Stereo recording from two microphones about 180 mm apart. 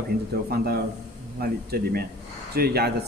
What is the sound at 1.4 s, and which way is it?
A man's voice, 60° right (ahead or behind).